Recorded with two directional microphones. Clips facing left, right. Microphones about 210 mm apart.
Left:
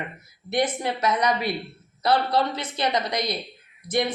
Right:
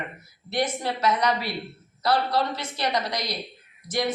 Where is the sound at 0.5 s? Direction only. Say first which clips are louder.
Left 2 dB; 20° left (ahead or behind).